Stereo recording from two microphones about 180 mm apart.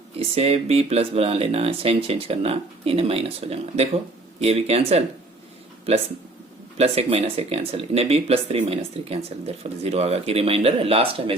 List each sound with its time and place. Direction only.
0.2 s speech: 35° right (ahead or behind)
6.7 s speech: 35° right (ahead or behind)